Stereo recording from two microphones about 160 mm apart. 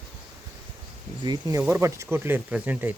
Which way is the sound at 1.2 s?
25° right (ahead or behind).